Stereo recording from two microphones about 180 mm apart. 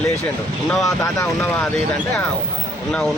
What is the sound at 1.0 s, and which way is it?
Speech, 15° left (ahead or behind).